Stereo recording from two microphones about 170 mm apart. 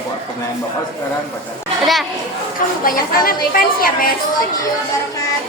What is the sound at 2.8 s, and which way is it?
A woman's voice, 55° left (ahead or behind).